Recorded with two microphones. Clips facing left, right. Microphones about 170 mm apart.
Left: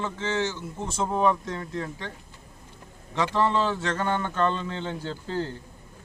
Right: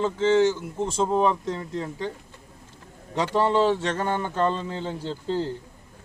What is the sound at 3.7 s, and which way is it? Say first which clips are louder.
Speech: right 2 dB; 30° right (ahead or behind).